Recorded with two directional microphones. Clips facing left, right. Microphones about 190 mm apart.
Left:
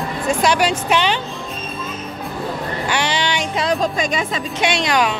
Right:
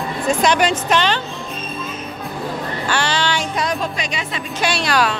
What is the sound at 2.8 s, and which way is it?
Child singing, 20° left (ahead or behind).